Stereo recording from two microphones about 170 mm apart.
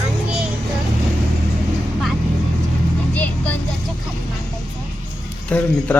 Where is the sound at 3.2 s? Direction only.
10° left (ahead or behind).